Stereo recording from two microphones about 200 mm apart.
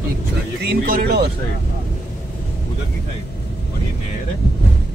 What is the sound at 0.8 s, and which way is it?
Speech, 45° right (ahead or behind).